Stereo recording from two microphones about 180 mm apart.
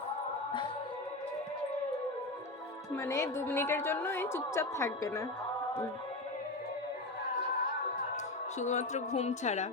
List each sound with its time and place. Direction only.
2.9 s a woman's voice: 15° left (ahead or behind)
8.1 s a woman's voice: 40° left (ahead or behind)